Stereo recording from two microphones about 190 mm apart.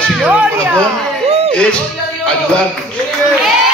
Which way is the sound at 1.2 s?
30° right (ahead or behind).